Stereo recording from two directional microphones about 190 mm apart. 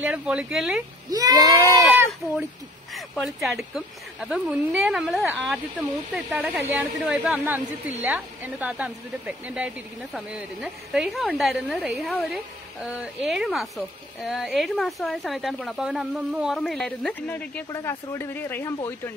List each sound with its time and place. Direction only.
0.0 s speech: 5° right (ahead or behind)
1.1 s speech: 20° right (ahead or behind)
1.4 s speech: 20° left (ahead or behind)
2.9 s speech: centre (ahead or behind)